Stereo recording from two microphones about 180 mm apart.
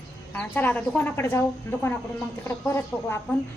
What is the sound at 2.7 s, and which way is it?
Speech, 15° left (ahead or behind).